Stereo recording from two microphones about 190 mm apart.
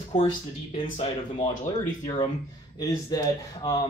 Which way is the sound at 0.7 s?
25° left (ahead or behind).